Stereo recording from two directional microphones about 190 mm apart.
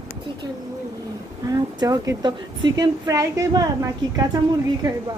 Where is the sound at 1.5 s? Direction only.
20° right (ahead or behind).